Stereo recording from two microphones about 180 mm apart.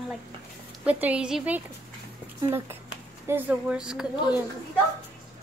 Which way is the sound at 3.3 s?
10° right (ahead or behind).